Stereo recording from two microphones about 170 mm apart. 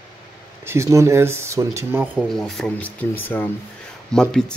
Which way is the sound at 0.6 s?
15° right (ahead or behind).